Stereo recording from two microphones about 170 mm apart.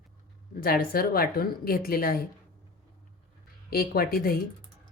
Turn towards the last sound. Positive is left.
turn(degrees=60)  # may be behind; listen again after turning